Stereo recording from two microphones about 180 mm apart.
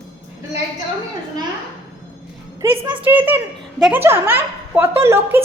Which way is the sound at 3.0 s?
10° right (ahead or behind).